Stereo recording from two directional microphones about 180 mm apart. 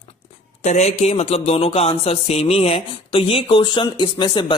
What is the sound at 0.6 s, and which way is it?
Speech, 40° left (ahead or behind).